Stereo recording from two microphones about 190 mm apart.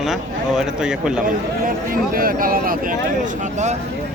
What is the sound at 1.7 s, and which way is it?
Speech, 50° right (ahead or behind).